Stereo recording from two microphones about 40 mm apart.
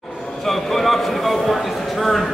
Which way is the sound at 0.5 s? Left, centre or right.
Centre.